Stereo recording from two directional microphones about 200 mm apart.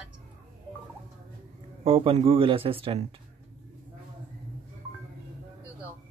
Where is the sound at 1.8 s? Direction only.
30° right (ahead or behind).